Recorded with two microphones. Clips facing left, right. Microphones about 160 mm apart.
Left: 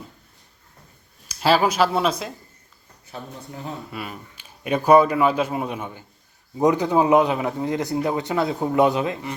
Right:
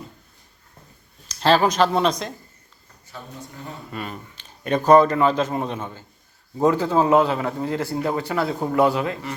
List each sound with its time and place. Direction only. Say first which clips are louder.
1.3 s a man's voice: right 1 dB; 10° left (ahead or behind)
3.9 s a man's voice: right 1 dB; 5° left (ahead or behind)